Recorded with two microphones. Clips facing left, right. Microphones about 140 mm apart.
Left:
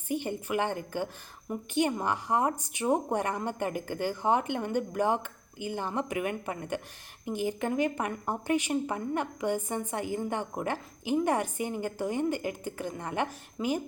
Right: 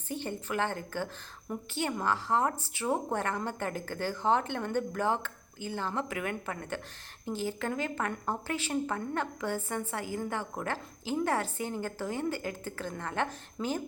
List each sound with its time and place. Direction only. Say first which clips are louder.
0.1 s a woman's voice: left 4 dB; 15° left (ahead or behind)